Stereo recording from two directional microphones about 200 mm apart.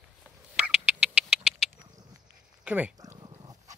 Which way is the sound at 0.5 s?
5° right (ahead or behind).